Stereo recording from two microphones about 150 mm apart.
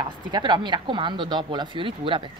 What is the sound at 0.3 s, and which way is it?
Speech, 30° right (ahead or behind).